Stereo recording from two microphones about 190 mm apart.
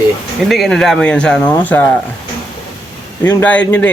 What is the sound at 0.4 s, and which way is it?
Speech, centre (ahead or behind).